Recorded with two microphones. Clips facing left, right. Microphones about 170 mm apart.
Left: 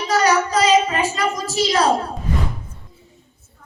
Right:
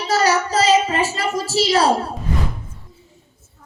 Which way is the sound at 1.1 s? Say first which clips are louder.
Even; 30° right (ahead or behind).